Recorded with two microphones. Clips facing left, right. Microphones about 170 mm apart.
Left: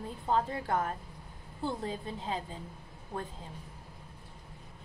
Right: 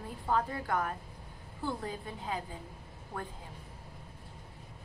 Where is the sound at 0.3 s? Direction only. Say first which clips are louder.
Left 1 dB; 25° left (ahead or behind).